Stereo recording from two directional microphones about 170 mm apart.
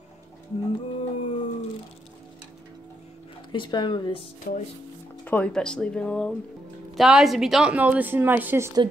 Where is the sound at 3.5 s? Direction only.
30° left (ahead or behind).